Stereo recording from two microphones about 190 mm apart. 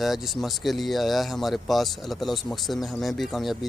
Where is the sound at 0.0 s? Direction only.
Centre (ahead or behind).